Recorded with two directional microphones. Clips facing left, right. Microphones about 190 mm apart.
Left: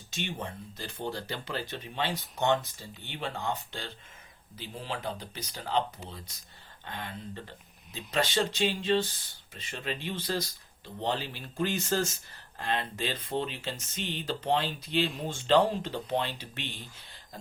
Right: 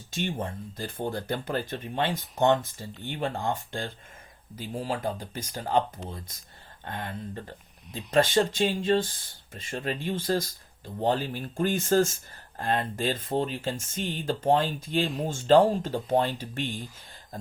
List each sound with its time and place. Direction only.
0.1 s speech: 50° right (ahead or behind)